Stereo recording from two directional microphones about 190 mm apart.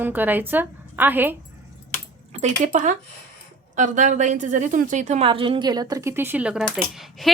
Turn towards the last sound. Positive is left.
turn(degrees=0)  # may be behind; listen again after turning